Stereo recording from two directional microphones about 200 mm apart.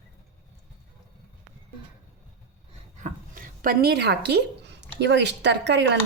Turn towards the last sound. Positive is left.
turn(degrees=-60)  # may be behind; listen again after turning